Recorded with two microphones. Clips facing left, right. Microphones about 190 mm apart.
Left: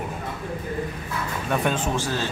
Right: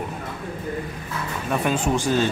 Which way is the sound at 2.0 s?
20° right (ahead or behind).